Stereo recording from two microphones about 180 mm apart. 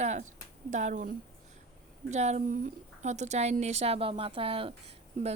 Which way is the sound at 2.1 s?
40° right (ahead or behind).